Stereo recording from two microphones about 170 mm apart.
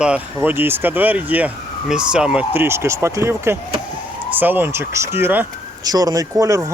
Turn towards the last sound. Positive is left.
turn(degrees=-20)  # may be behind; listen again after turning